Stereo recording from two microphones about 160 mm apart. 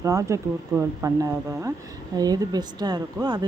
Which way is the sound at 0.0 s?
20° right (ahead or behind).